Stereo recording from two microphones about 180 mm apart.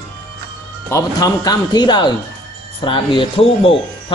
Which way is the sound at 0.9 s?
20° left (ahead or behind).